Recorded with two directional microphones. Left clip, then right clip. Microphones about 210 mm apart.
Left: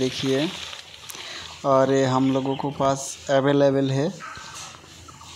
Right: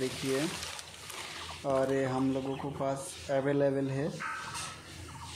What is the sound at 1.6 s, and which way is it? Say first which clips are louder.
Speech: left 11 dB; 25° left (ahead or behind).